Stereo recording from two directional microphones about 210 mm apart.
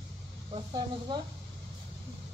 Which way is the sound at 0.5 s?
20° right (ahead or behind).